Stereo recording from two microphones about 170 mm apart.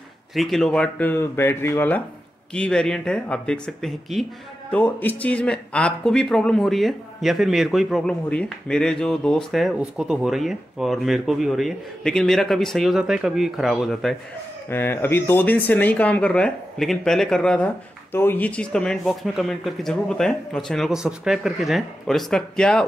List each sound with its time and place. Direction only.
0.3 s speech: centre (ahead or behind)
14.7 s speech: 15° left (ahead or behind)